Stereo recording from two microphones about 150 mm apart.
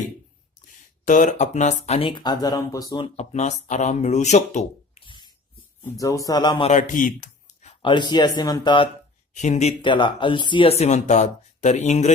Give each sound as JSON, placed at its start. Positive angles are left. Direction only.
{"t": 1.0, "sound": "speech", "side_deg": 55}
{"t": 3.0, "sound": "speech", "side_deg": 45}
{"t": 5.0, "sound": "a sound", "side_deg": 30}
{"t": 5.8, "sound": "speech", "side_deg": 20}
{"t": 6.7, "sound": "a sound", "side_deg": 55}
{"t": 7.8, "sound": "speech", "side_deg": 35}
{"t": 9.3, "sound": "speech", "side_deg": 50}
{"t": 9.8, "sound": "speech", "side_deg": 35}